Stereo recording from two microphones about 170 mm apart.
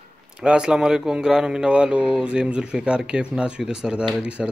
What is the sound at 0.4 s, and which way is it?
Speech, 5° right (ahead or behind).